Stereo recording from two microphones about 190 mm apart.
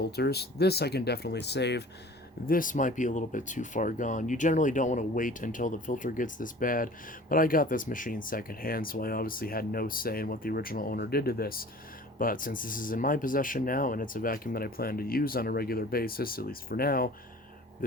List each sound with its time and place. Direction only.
0.0 s speech: 55° left (ahead or behind)
2.5 s speech: 45° left (ahead or behind)